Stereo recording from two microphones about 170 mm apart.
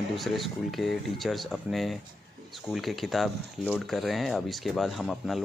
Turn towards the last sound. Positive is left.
turn(degrees=0)  # may be behind; listen again after turning